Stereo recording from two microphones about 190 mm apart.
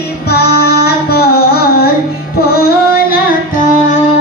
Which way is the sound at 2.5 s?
50° left (ahead or behind).